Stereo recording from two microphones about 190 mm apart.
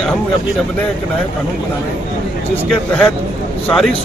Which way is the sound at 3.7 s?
Centre (ahead or behind).